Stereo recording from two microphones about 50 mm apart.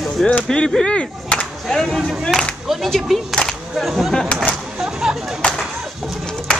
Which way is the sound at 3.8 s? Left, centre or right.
Centre.